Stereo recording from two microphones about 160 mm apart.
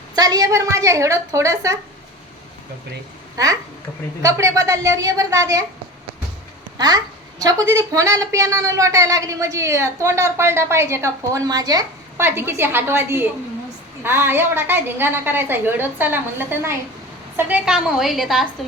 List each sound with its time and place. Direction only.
0.2 s a woman's voice: 20° right (ahead or behind)
3.3 s a woman's voice: 20° right (ahead or behind)
6.7 s a woman's voice: 25° right (ahead or behind); by 18.4 s centre (ahead or behind)